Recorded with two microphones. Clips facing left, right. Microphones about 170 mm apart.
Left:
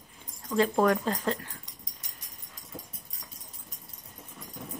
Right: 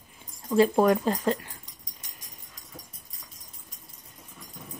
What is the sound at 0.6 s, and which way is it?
Speech, 15° right (ahead or behind).